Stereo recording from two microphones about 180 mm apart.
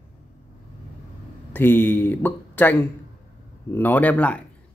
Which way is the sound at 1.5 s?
10° left (ahead or behind).